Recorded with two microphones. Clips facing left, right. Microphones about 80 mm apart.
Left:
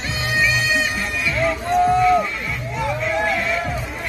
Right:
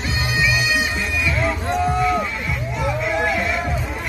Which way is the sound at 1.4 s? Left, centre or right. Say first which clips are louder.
Left 5 dB; centre.